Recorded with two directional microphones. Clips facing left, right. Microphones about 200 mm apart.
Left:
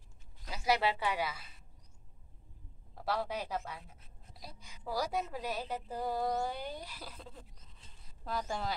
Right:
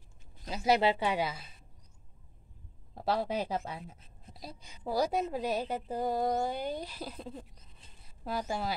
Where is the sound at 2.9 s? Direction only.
25° right (ahead or behind).